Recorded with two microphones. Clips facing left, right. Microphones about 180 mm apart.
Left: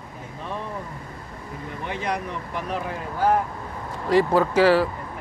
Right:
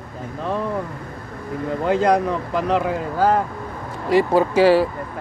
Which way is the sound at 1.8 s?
90° right.